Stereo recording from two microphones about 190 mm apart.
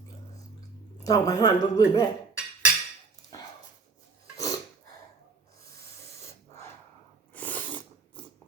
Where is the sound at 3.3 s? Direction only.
20° left (ahead or behind).